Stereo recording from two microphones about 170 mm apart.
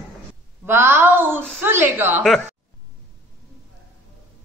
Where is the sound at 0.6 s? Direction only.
15° right (ahead or behind).